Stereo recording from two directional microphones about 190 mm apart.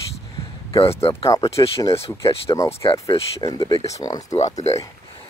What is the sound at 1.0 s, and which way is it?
Speech, 30° left (ahead or behind).